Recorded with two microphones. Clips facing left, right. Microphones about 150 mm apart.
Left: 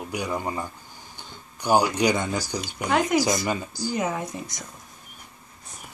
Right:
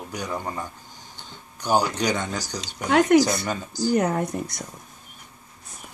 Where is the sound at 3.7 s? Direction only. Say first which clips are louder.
Right 6 dB; 15° right (ahead or behind).